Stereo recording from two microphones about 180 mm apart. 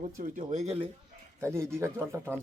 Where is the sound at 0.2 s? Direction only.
40° right (ahead or behind).